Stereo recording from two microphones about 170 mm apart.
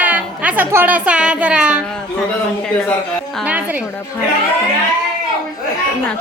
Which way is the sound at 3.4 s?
10° right (ahead or behind).